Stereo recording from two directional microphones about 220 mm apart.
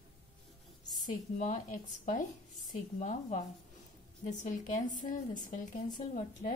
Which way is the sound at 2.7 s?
35° left (ahead or behind).